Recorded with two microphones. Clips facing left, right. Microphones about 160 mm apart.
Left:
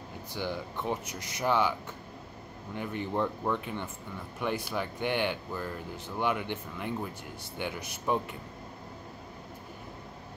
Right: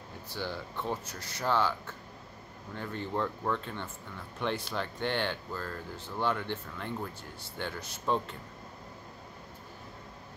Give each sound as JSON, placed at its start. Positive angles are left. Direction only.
{"t": 0.3, "sound": "speech", "side_deg": 15}